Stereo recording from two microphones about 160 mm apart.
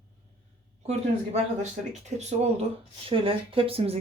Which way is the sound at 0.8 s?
45° right (ahead or behind).